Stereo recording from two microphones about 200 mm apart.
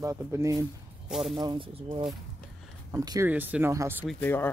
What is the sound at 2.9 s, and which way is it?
Speech, 15° right (ahead or behind).